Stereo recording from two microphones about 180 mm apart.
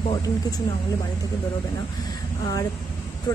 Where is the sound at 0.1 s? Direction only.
20° left (ahead or behind).